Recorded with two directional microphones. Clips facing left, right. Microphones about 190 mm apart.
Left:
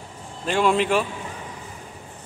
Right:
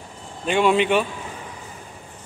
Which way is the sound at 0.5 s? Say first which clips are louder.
Right 2 dB; centre (ahead or behind).